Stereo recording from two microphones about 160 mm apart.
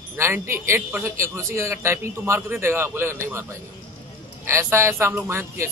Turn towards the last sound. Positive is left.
turn(degrees=-15)  # may be behind; listen again after turning